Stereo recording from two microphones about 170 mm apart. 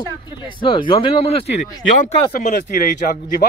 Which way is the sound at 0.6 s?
30° left (ahead or behind).